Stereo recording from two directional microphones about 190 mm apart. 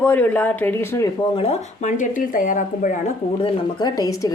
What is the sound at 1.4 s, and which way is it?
Speech, 35° left (ahead or behind).